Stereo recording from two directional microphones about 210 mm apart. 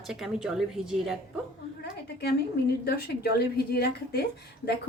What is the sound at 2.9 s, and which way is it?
A woman's voice, 50° left (ahead or behind).